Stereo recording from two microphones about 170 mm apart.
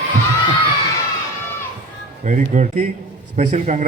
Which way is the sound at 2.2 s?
45° right (ahead or behind).